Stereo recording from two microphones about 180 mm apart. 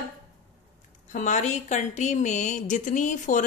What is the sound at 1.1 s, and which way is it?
A woman's voice, 45° left (ahead or behind).